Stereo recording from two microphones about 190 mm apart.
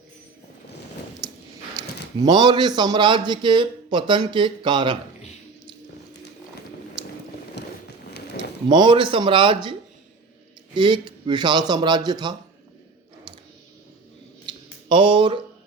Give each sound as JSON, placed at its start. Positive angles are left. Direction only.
{"t": 1.8, "sound": "a sound", "side_deg": -20}
{"t": 2.2, "sound": "a man's voice", "side_deg": -25}
{"t": 7.6, "sound": "a sound", "side_deg": 65}
{"t": 8.7, "sound": "a man's voice", "side_deg": -25}
{"t": 10.8, "sound": "a man's voice", "side_deg": -25}
{"t": 14.8, "sound": "a man's voice", "side_deg": -25}